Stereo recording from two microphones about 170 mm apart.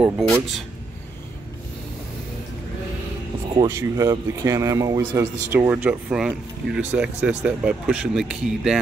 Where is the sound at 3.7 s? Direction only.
20° right (ahead or behind).